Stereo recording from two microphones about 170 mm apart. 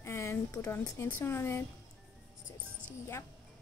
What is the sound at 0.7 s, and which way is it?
Speech, 10° left (ahead or behind).